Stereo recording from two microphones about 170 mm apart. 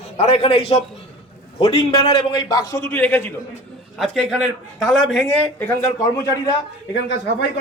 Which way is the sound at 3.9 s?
5° left (ahead or behind).